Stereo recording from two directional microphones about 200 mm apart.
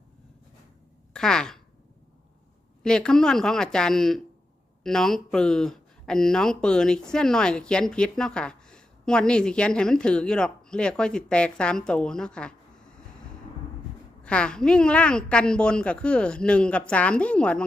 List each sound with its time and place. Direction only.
1.1 s speech: 5° left (ahead or behind)
2.8 s a woman's voice: 5° left (ahead or behind)
14.3 s a woman's voice: 5° left (ahead or behind)